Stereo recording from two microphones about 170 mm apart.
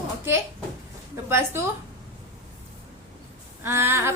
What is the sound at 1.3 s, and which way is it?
Speech, 15° right (ahead or behind).